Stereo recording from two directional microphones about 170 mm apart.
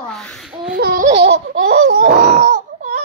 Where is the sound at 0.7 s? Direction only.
65° right (ahead or behind).